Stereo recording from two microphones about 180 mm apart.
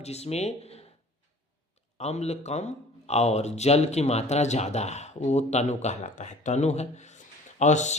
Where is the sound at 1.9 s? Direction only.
35° left (ahead or behind).